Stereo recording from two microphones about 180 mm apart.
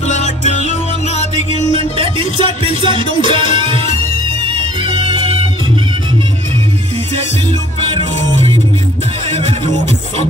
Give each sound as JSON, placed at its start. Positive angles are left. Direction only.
{"t": 0.1, "sound": "music", "side_deg": 40}
{"t": 1.7, "sound": "music", "side_deg": -30}
{"t": 7.9, "sound": "music", "side_deg": -30}